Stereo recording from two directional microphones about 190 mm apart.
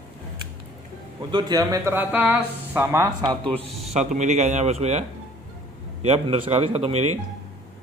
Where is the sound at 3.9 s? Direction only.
40° right (ahead or behind).